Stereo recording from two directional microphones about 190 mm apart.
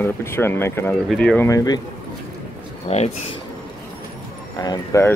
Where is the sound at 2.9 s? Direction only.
35° left (ahead or behind).